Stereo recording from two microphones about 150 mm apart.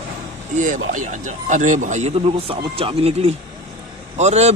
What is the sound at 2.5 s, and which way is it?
A man's voice, 40° right (ahead or behind).